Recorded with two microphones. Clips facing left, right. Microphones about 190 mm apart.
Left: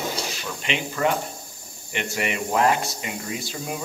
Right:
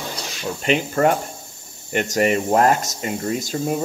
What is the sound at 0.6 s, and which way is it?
Speech, 45° right (ahead or behind).